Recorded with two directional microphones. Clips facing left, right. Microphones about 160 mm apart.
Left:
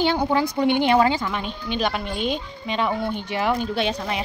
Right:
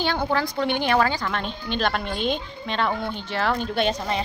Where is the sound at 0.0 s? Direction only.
15° left (ahead or behind).